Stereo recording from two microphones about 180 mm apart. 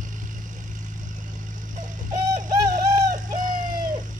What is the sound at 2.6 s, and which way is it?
Bird, 20° right (ahead or behind).